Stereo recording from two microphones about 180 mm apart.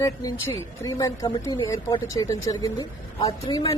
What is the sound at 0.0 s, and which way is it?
Speech, 20° left (ahead or behind).